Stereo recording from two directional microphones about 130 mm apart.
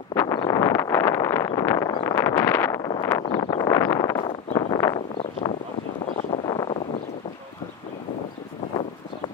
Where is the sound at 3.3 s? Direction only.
30° left (ahead or behind).